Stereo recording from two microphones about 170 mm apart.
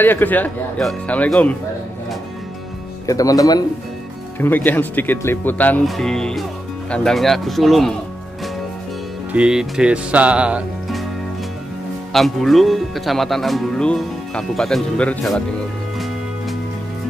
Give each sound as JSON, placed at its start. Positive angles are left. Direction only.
{"t": 0.0, "sound": "speech", "side_deg": 10}
{"t": 3.1, "sound": "speech", "side_deg": 20}
{"t": 4.4, "sound": "speech", "side_deg": 10}
{"t": 9.3, "sound": "speech", "side_deg": -5}
{"t": 12.1, "sound": "speech", "side_deg": 0}